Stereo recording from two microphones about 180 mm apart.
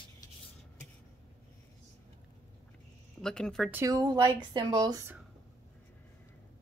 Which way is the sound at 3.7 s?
15° right (ahead or behind).